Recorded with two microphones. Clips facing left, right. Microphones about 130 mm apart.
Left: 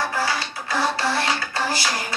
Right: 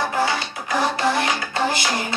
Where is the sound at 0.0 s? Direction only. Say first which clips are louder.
Right 3 dB; 20° right (ahead or behind).